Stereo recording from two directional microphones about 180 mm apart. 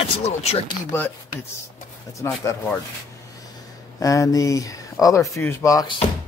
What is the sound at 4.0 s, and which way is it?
Speech, 20° left (ahead or behind).